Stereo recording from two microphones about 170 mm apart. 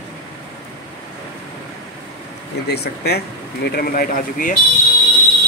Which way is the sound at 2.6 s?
75° left (ahead or behind).